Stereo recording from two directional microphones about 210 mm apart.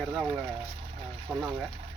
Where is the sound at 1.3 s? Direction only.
10° right (ahead or behind).